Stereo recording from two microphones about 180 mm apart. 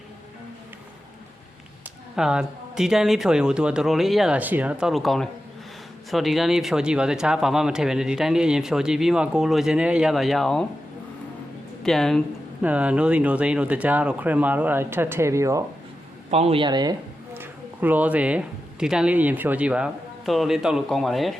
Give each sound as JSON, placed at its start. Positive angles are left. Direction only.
{"t": 2.1, "sound": "speech", "side_deg": -5}
{"t": 11.8, "sound": "speech", "side_deg": 0}
{"t": 16.3, "sound": "speech", "side_deg": -35}
{"t": 17.3, "sound": "speech", "side_deg": -10}